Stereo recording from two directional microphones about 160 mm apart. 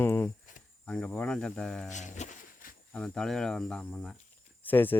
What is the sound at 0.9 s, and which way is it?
Cricket, 5° left (ahead or behind).